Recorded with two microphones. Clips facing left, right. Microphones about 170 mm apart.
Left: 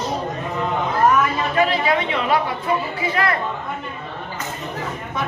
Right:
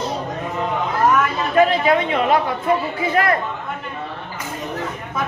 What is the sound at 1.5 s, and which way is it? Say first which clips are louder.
Speech: right 5 dB; 50° right (ahead or behind).